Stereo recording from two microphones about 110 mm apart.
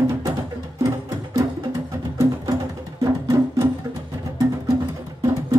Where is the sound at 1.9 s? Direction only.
30° right (ahead or behind).